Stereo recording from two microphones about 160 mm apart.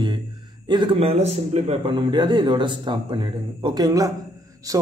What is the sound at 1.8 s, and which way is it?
Speech, 30° right (ahead or behind).